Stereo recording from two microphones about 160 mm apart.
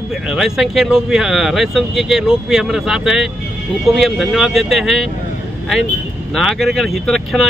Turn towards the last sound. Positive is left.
turn(degrees=0)  # may be behind; listen again after turning